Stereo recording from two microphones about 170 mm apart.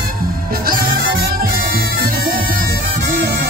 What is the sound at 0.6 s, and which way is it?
Music, 60° right (ahead or behind).